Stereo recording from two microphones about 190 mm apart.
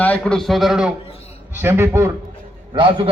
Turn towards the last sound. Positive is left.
turn(degrees=-25)  # may be behind; listen again after turning